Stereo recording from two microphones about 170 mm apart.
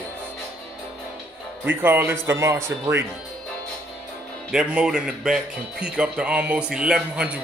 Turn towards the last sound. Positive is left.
turn(degrees=-5)  # may be behind; listen again after turning